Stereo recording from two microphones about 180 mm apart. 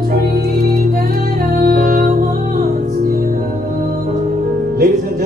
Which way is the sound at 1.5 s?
55° right (ahead or behind).